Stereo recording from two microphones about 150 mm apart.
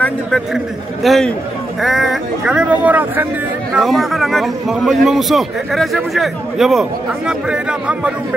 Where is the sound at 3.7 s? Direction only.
Centre (ahead or behind).